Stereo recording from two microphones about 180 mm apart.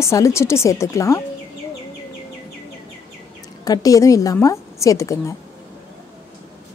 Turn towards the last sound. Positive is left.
turn(degrees=15)  # may be behind; listen again after turning